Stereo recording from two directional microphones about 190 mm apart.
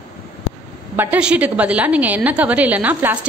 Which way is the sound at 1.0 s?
5° right (ahead or behind).